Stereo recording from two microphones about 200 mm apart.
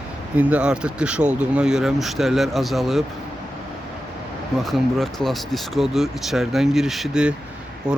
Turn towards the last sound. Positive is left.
turn(degrees=-5)  # may be behind; listen again after turning